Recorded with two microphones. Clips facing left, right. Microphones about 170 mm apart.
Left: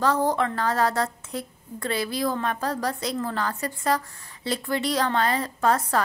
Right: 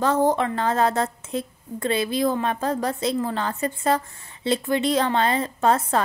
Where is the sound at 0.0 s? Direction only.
20° right (ahead or behind).